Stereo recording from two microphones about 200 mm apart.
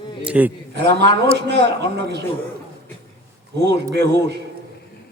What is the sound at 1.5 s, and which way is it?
Speech, 60° right (ahead or behind).